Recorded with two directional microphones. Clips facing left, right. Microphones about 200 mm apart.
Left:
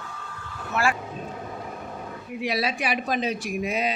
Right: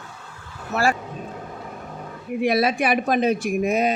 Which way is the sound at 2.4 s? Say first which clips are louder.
Right 7 dB; 55° right (ahead or behind).